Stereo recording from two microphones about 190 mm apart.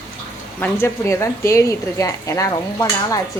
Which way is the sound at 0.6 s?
10° left (ahead or behind).